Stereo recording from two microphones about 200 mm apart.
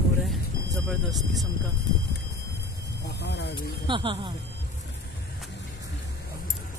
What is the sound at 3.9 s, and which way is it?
Speech, 25° right (ahead or behind).